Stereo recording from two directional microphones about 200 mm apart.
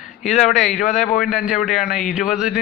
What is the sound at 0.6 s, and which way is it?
Speech, 35° left (ahead or behind).